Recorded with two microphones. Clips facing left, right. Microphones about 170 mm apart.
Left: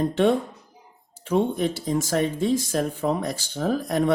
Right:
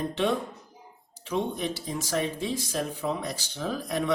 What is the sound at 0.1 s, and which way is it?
Speech, 50° left (ahead or behind).